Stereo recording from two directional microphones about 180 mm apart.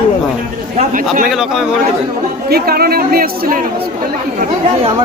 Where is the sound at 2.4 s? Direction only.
60° right (ahead or behind).